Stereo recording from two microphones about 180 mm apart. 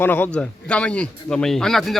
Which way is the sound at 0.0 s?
10° left (ahead or behind).